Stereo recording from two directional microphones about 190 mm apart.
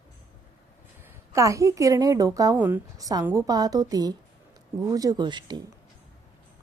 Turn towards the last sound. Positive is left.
turn(degrees=-25)  # may be behind; listen again after turning